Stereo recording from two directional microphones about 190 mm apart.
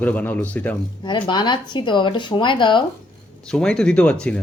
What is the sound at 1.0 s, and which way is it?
Speech, 25° left (ahead or behind).